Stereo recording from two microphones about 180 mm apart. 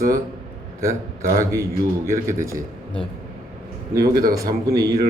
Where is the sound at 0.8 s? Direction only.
15° right (ahead or behind).